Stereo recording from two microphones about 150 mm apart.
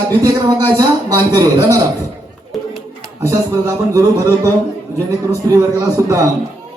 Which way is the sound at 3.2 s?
20° right (ahead or behind).